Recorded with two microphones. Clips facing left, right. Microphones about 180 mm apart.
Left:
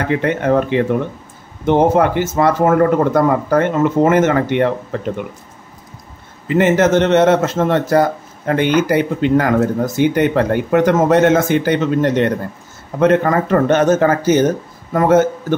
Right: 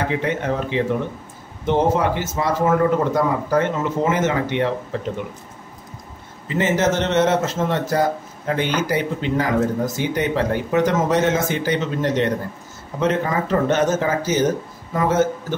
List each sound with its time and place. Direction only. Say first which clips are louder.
0.1 s speech: left 7 dB; 60° left (ahead or behind)
6.5 s speech: left 7 dB; 60° left (ahead or behind)